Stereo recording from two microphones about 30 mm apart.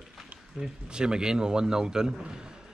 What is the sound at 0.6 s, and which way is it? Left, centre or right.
Speech, right.